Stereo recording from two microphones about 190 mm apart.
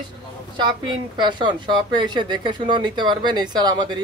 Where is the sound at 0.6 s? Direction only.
25° right (ahead or behind).